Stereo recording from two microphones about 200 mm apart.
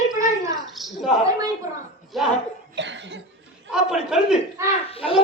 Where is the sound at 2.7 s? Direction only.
65° right (ahead or behind).